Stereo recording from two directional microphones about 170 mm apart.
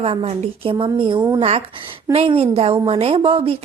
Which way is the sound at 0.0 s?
35° right (ahead or behind).